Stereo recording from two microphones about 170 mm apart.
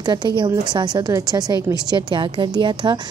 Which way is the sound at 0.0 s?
25° right (ahead or behind).